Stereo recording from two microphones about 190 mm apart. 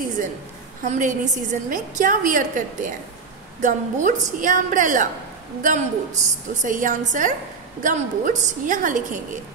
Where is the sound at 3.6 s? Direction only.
40° right (ahead or behind).